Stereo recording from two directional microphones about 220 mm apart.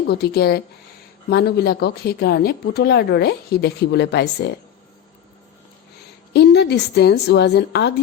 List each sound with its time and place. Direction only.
0.1 s a woman's voice: 45° left (ahead or behind)
6.3 s a woman's voice: 50° left (ahead or behind)